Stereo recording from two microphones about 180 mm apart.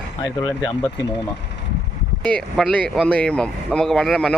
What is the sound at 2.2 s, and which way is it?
Speech, 5° left (ahead or behind).